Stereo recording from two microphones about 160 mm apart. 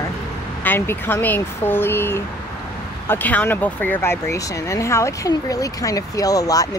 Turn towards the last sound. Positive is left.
turn(degrees=20)  # may be behind; listen again after turning